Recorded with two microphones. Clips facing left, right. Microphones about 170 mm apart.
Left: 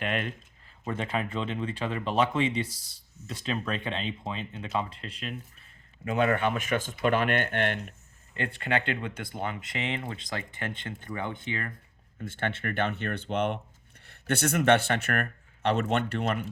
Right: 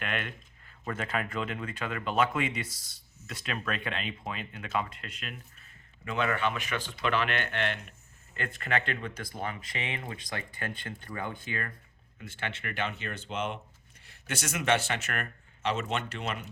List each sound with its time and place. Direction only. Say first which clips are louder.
0.0 s speech: left 4 dB; 30° left (ahead or behind)
6.1 s speech: left 4 dB; 45° left (ahead or behind)
8.4 s speech: left 3 dB; 30° left (ahead or behind)
12.2 s speech: left 6 dB; 50° left (ahead or behind)